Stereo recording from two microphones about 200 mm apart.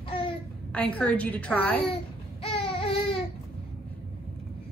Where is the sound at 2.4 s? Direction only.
30° left (ahead or behind).